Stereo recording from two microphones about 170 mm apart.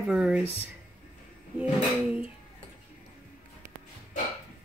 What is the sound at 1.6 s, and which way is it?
Speech, 5° right (ahead or behind).